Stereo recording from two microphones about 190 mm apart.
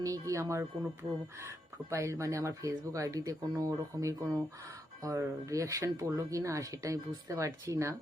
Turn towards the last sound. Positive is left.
turn(degrees=-15)  # may be behind; listen again after turning